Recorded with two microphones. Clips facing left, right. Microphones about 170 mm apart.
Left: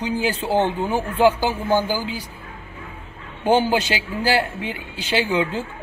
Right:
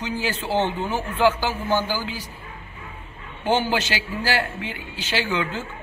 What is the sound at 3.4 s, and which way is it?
Speech, 15° left (ahead or behind).